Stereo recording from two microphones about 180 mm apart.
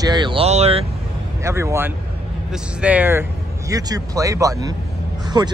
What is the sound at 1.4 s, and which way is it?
Speech, 15° right (ahead or behind).